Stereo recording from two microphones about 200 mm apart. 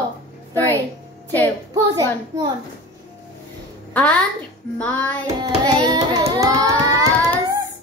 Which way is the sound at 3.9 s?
5° left (ahead or behind).